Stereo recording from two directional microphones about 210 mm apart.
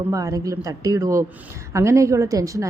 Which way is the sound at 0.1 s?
15° right (ahead or behind).